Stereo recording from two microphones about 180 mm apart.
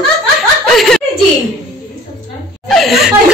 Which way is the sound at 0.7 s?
Centre (ahead or behind).